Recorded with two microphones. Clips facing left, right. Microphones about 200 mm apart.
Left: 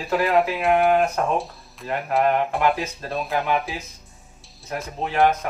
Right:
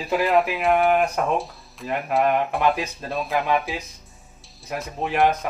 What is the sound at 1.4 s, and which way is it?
A man's voice, centre (ahead or behind).